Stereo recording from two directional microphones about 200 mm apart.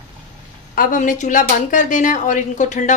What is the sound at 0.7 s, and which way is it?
Speech, 40° left (ahead or behind).